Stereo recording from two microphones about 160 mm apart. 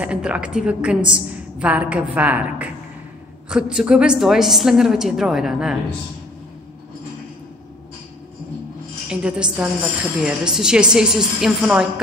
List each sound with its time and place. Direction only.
0.0 s a woman's voice: 5° right (ahead or behind)
9.1 s a woman's voice: 5° right (ahead or behind)